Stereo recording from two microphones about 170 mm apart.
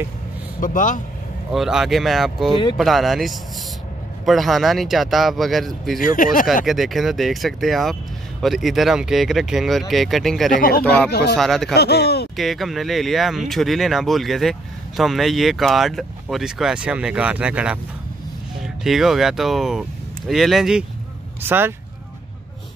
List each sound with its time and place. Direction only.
0.6 s speech: 50° left (ahead or behind)
1.5 s speech: centre (ahead or behind)
5.9 s speech: 55° left (ahead or behind)
6.4 s speech: centre (ahead or behind)
10.5 s speech: 60° left (ahead or behind)
10.8 s speech: 10° left (ahead or behind)
11.1 s speech: 70° left (ahead or behind)
11.3 s speech: centre (ahead or behind)
11.7 s speech: 70° left (ahead or behind)
12.4 s speech: centre (ahead or behind)
21.4 s speech: 10° right (ahead or behind)